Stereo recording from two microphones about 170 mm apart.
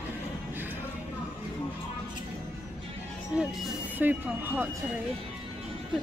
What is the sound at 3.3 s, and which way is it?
A woman's voice, 5° right (ahead or behind).